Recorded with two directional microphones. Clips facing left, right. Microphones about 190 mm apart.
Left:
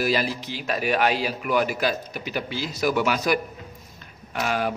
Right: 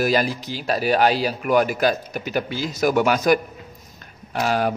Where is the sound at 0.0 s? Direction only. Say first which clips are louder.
Right 4 dB; 45° right (ahead or behind).